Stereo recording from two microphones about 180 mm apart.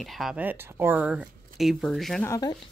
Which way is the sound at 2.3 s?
20° left (ahead or behind).